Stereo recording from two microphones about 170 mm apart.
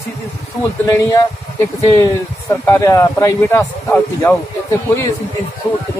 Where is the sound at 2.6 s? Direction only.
15° left (ahead or behind).